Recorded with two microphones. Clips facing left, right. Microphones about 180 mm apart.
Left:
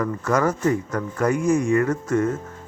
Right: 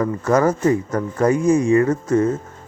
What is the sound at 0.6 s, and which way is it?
Speech, 25° right (ahead or behind).